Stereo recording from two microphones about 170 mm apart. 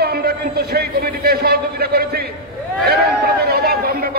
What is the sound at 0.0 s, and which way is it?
A man's voice, 65° right (ahead or behind).